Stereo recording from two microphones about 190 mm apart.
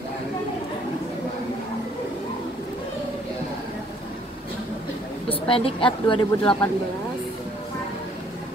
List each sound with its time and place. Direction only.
5.3 s a woman's voice: 30° left (ahead or behind)